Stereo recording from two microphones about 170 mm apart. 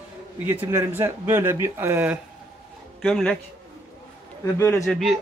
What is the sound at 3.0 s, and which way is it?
Speech, centre (ahead or behind).